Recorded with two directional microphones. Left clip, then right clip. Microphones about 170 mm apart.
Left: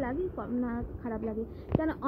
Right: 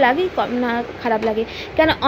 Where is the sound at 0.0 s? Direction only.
30° right (ahead or behind).